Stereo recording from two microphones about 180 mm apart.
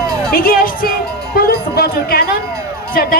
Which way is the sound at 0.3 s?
55° left (ahead or behind).